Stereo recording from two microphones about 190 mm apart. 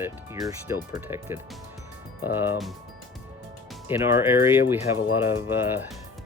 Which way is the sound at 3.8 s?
10° right (ahead or behind).